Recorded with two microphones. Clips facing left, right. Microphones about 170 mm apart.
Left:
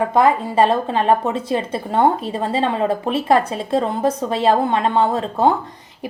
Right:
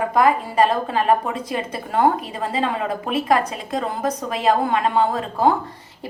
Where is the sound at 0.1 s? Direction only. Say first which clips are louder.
Left 2 dB; 25° left (ahead or behind).